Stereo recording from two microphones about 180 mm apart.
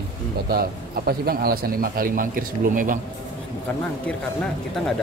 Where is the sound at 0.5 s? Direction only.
55° right (ahead or behind).